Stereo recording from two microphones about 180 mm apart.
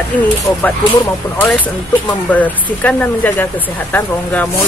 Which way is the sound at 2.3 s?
10° left (ahead or behind).